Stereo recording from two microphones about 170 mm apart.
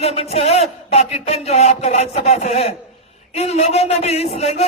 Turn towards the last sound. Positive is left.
turn(degrees=40)  # may be behind; listen again after turning